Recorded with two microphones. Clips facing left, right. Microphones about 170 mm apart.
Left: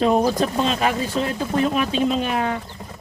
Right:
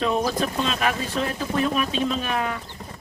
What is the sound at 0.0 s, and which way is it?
Speech, 30° left (ahead or behind).